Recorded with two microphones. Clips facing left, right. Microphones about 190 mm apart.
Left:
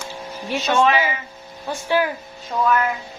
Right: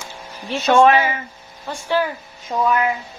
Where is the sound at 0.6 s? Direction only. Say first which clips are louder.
Right 5 dB; 50° right (ahead or behind).